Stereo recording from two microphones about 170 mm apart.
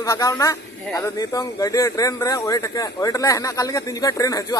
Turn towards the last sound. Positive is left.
turn(degrees=20)  # may be behind; listen again after turning